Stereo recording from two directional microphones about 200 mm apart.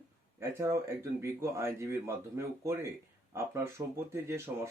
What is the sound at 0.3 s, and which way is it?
Speech, 15° right (ahead or behind).